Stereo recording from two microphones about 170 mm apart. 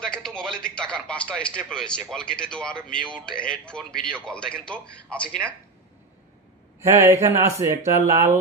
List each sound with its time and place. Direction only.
0.0 s a man's voice: 5° left (ahead or behind)
6.8 s speech: 15° right (ahead or behind)